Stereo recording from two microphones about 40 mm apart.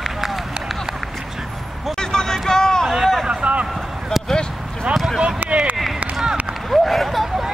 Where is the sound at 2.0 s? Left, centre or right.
Centre.